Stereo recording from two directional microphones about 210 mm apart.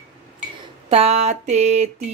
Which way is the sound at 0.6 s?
30° right (ahead or behind).